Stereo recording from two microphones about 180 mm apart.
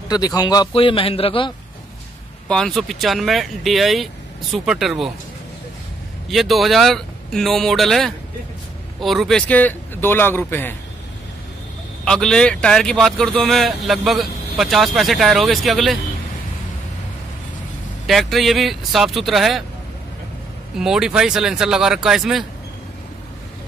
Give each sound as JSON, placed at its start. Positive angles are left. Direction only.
{"t": 0.1, "sound": "a man's voice", "side_deg": 20}
{"t": 2.4, "sound": "speech", "side_deg": 5}
{"t": 6.2, "sound": "speech", "side_deg": 0}
{"t": 12.0, "sound": "speech", "side_deg": 5}
{"t": 18.0, "sound": "speech", "side_deg": 0}
{"t": 20.7, "sound": "speech", "side_deg": -5}